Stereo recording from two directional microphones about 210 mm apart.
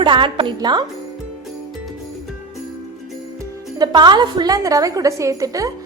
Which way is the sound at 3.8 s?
20° right (ahead or behind).